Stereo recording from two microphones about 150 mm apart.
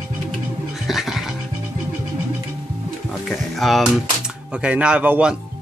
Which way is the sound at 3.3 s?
Centre (ahead or behind).